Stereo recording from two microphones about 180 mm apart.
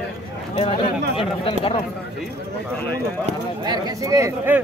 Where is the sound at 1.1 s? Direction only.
30° left (ahead or behind).